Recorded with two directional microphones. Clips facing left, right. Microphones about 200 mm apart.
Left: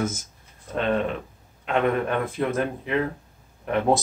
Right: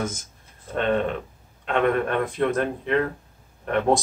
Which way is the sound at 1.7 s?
5° left (ahead or behind).